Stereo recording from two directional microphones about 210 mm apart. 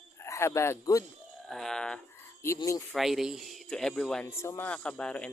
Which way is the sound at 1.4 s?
Centre (ahead or behind).